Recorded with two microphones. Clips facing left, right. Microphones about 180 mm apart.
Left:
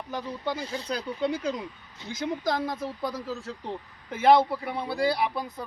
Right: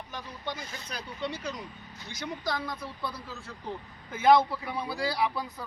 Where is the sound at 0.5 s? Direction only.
30° left (ahead or behind).